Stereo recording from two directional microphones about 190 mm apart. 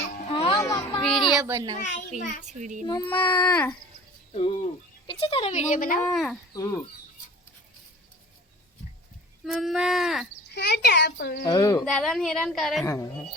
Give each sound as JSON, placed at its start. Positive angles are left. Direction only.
{"t": 0.3, "sound": "music", "side_deg": 30}
{"t": 0.6, "sound": "a sound", "side_deg": 15}
{"t": 1.4, "sound": "a child's voice", "side_deg": -15}
{"t": 2.4, "sound": "speech", "side_deg": -40}
{"t": 2.8, "sound": "speech", "side_deg": 20}
{"t": 3.1, "sound": "a child's voice", "side_deg": 10}
{"t": 4.4, "sound": "speech", "side_deg": 30}
{"t": 6.1, "sound": "a woman's voice", "side_deg": 0}
{"t": 6.5, "sound": "speech", "side_deg": 15}
{"t": 9.4, "sound": "a woman's voice", "side_deg": 0}
{"t": 10.5, "sound": "a child's voice", "side_deg": 60}
{"t": 11.4, "sound": "speech", "side_deg": 20}
{"t": 11.8, "sound": "a woman's voice", "side_deg": 0}
{"t": 12.8, "sound": "a child's voice", "side_deg": 15}